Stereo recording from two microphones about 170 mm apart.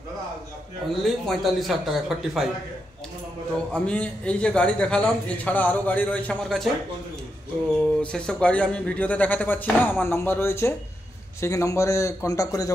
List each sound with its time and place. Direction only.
1.0 s a man's voice: centre (ahead or behind)
3.7 s a man's voice: 5° left (ahead or behind)
8.0 s a man's voice: 5° left (ahead or behind)